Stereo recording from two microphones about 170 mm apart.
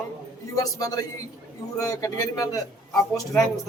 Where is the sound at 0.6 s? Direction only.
20° left (ahead or behind).